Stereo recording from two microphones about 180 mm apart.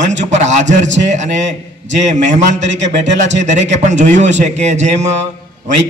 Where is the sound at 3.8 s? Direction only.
45° right (ahead or behind).